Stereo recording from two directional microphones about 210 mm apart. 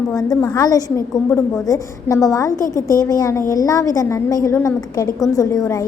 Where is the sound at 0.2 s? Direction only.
20° left (ahead or behind).